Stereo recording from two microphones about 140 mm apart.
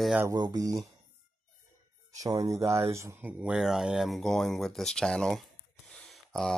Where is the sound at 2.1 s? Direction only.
25° right (ahead or behind).